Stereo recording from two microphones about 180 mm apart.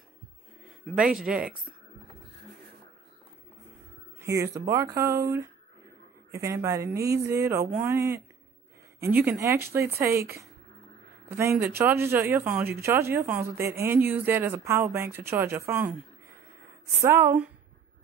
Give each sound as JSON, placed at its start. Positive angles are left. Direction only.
{"t": 0.9, "sound": "speech", "side_deg": -5}
{"t": 4.2, "sound": "a man's voice", "side_deg": -15}